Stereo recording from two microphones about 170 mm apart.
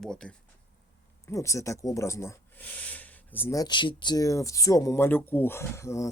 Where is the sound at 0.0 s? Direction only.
5° left (ahead or behind).